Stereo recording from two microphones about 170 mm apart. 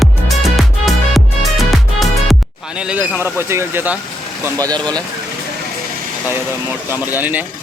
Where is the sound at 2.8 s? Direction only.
10° right (ahead or behind).